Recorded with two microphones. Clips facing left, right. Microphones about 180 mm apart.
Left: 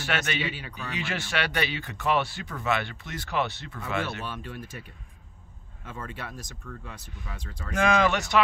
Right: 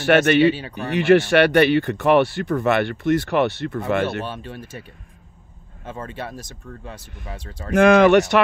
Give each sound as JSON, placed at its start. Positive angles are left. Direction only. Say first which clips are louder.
{"t": 0.0, "sound": "speech", "louder": "right 15 dB", "side_deg": -60}
{"t": 4.3, "sound": "speech", "louder": "right 5 dB", "side_deg": -25}
{"t": 5.9, "sound": "speech", "louder": "right 7 dB", "side_deg": -25}
{"t": 7.7, "sound": "speech", "louder": "right 11 dB", "side_deg": -70}